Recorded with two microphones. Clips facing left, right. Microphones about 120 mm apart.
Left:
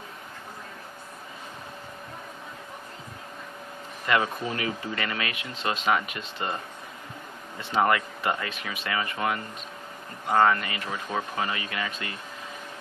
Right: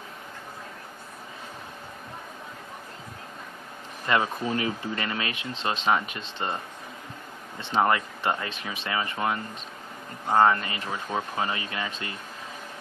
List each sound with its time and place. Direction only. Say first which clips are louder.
4.1 s speech: right 1 dB; 30° right (ahead or behind)
7.8 s speech: even; 25° right (ahead or behind)
10.6 s speech: even; 30° right (ahead or behind)